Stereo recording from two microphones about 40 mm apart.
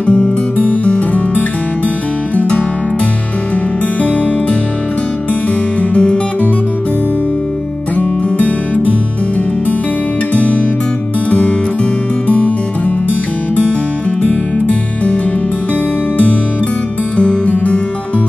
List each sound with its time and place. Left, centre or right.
0.0 s music: left
5.8 s music: left
8.0 s music: left
10.3 s music: left
14.2 s music: left
17.2 s music: left